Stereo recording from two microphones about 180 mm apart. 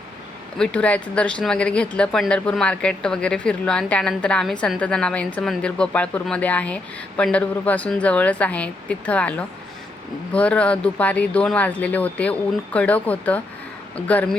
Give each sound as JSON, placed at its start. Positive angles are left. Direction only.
{"t": 0.6, "sound": "speech", "side_deg": 5}
{"t": 10.3, "sound": "speech", "side_deg": 5}